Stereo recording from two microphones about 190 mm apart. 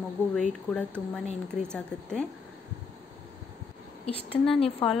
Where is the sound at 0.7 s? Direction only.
Centre (ahead or behind).